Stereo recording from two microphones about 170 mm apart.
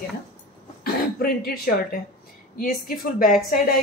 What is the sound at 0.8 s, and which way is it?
Throat clearing, 60° left (ahead or behind).